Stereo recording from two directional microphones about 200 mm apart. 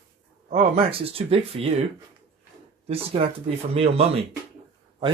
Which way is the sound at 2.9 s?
30° right (ahead or behind).